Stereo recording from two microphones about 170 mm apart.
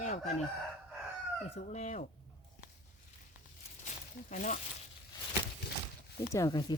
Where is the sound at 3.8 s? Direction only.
50° left (ahead or behind).